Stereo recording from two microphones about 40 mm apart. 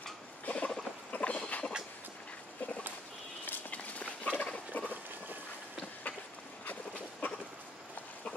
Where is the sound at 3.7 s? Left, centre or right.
Left.